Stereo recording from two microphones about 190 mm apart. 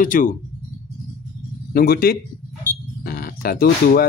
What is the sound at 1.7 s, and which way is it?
Speech, 50° left (ahead or behind).